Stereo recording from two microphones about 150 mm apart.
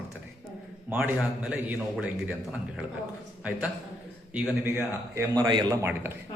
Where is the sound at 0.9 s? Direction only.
5° right (ahead or behind).